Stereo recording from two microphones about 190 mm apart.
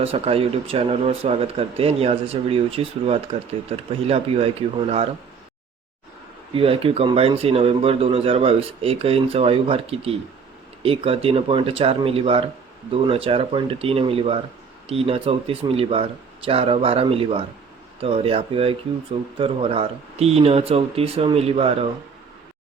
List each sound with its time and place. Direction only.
0.0 s speech: 30° right (ahead or behind)
6.5 s speech: 30° right (ahead or behind)